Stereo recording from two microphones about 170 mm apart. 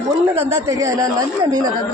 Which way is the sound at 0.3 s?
15° right (ahead or behind).